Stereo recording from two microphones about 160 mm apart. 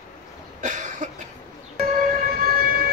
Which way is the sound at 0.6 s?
50° right (ahead or behind).